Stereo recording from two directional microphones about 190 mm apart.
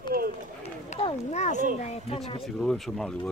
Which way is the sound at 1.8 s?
35° left (ahead or behind).